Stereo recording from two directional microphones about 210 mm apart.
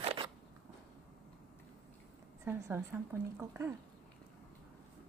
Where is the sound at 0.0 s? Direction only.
25° right (ahead or behind).